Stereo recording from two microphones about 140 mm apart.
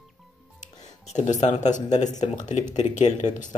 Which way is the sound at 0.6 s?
55° left (ahead or behind).